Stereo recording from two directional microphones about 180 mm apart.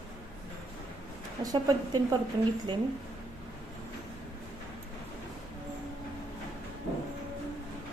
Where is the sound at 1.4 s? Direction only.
20° right (ahead or behind).